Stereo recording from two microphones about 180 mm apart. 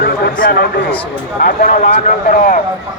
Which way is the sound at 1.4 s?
45° left (ahead or behind).